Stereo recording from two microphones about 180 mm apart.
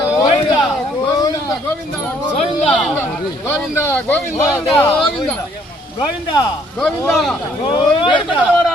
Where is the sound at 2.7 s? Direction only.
5° left (ahead or behind).